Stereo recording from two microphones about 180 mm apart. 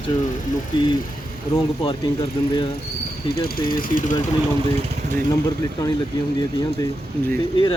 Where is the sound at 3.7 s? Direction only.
45° left (ahead or behind).